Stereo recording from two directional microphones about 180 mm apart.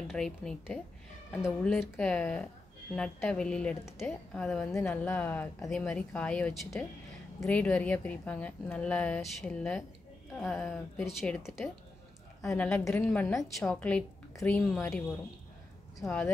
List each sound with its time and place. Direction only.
0.1 s a woman's voice: 5° left (ahead or behind)
12.4 s a woman's voice: 15° left (ahead or behind)
13.0 s a woman's voice: 5° left (ahead or behind)